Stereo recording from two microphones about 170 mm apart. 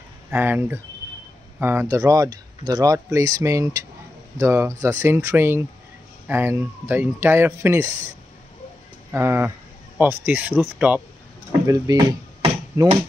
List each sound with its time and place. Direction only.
0.3 s speech: 10° right (ahead or behind)
9.1 s speech: 15° right (ahead or behind)